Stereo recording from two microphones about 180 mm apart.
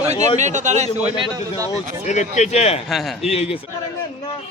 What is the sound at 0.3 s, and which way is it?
Speech, 40° right (ahead or behind).